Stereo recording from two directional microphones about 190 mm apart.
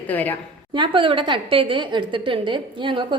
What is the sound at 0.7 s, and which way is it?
A woman's voice, 25° right (ahead or behind).